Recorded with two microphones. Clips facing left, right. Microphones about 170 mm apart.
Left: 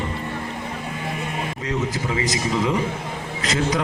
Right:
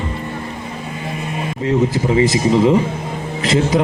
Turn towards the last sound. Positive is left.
turn(degrees=-25)  # may be behind; listen again after turning